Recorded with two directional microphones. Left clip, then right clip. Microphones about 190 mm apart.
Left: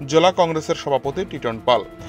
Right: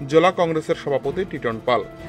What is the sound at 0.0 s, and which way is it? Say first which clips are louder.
Speech: left 1 dB; 25° left (ahead or behind).